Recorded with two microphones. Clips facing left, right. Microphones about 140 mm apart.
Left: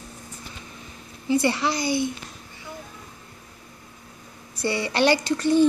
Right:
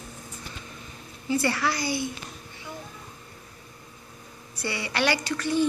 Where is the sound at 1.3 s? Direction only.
20° left (ahead or behind).